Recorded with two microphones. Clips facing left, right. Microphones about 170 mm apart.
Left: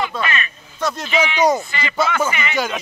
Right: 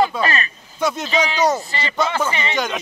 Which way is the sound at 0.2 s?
35° right (ahead or behind).